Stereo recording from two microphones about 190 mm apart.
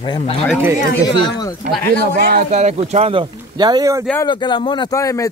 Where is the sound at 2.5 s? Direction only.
35° right (ahead or behind); by 4.0 s 20° right (ahead or behind).